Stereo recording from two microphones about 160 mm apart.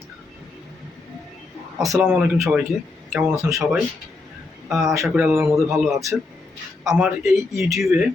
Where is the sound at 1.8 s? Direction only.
5° right (ahead or behind).